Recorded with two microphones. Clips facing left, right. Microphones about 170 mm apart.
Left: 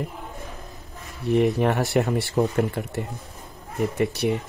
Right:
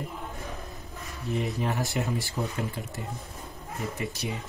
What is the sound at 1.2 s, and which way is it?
Speech, 65° left (ahead or behind).